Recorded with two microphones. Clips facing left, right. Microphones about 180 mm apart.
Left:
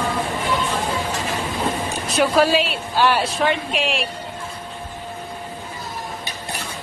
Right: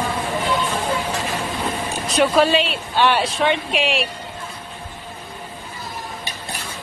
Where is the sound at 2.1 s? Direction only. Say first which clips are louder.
Right 1 dB; centre (ahead or behind).